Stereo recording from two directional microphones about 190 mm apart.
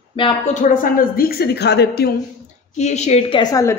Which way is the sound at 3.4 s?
20° left (ahead or behind).